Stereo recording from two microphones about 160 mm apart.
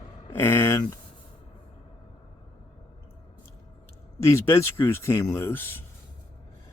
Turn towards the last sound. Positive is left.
turn(degrees=15)  # may be behind; listen again after turning